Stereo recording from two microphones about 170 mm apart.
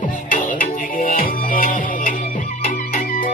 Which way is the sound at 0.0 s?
50° left (ahead or behind).